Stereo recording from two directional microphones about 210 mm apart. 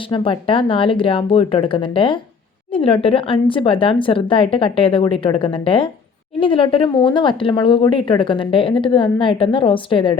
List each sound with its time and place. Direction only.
0.1 s speech: 25° left (ahead or behind)